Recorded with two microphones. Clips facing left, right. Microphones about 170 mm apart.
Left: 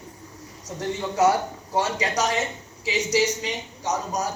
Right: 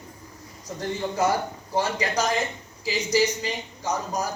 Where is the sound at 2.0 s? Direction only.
70° left (ahead or behind).